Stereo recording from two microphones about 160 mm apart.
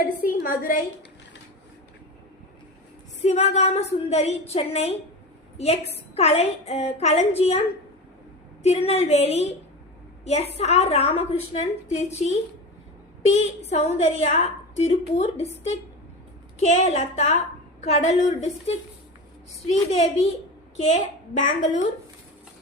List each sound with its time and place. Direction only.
0.0 s a woman's voice: 60° left (ahead or behind)
3.2 s a woman's voice: 45° left (ahead or behind)
8.6 s a woman's voice: 40° left (ahead or behind)